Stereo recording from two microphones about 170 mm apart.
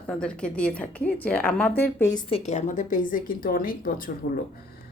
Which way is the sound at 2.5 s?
45° left (ahead or behind).